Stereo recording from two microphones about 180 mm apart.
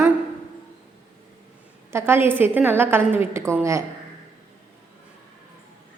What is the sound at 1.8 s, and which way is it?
A woman's voice, 15° right (ahead or behind).